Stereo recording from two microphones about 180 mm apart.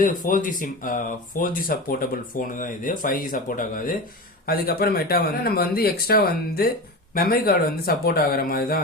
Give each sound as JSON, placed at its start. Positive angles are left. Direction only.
{"t": 0.0, "sound": "speech", "side_deg": 50}